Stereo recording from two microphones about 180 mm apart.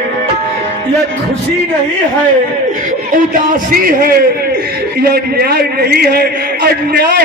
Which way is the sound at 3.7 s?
55° right (ahead or behind).